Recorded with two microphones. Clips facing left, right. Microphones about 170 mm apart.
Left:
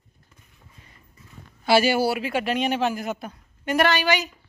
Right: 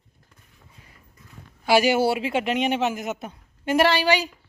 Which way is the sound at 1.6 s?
15° right (ahead or behind).